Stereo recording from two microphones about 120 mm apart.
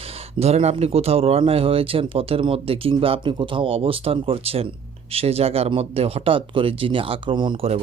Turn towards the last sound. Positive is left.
turn(degrees=-40)  # may be behind; listen again after turning